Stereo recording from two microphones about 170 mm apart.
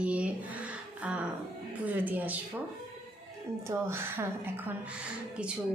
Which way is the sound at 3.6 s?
15° right (ahead or behind).